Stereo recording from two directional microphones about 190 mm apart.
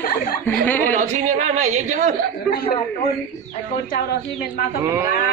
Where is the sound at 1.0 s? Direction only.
40° right (ahead or behind).